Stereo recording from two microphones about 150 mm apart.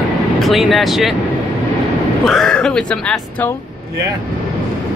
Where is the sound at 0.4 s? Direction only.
Centre (ahead or behind).